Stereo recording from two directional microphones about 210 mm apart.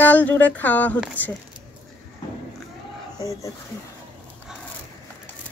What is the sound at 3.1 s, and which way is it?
Speech, 15° left (ahead or behind).